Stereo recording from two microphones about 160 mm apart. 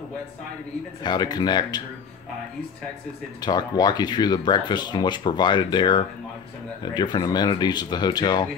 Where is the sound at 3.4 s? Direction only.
25° left (ahead or behind).